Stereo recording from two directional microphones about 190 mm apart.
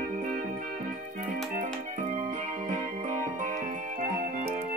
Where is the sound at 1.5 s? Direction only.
45° right (ahead or behind).